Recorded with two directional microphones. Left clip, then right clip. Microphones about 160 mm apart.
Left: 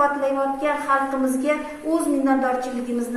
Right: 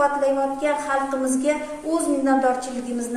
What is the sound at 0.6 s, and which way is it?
A woman's voice, 10° right (ahead or behind).